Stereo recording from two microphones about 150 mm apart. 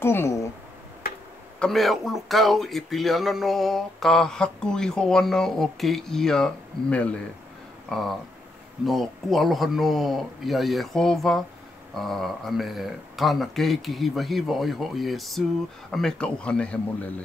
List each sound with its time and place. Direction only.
0.0 s speech: 15° left (ahead or behind)
1.0 s tick-tock: 90° left
1.6 s speech: centre (ahead or behind)